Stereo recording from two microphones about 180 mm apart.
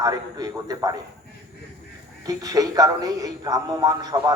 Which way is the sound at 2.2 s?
20° right (ahead or behind).